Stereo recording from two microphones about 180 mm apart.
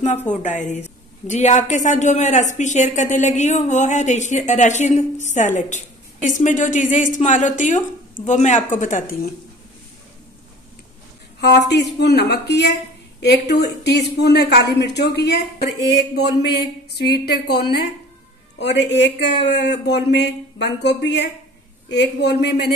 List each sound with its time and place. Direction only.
0.4 s a woman's voice: 40° left (ahead or behind)
11.7 s speech: 70° left (ahead or behind)